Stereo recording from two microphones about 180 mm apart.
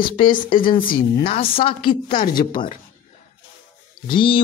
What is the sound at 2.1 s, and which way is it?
Speech, 45° left (ahead or behind).